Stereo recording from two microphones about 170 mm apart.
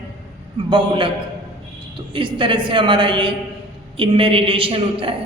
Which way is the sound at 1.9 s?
30° right (ahead or behind).